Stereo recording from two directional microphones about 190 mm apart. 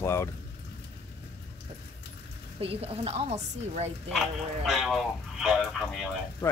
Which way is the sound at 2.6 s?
30° right (ahead or behind).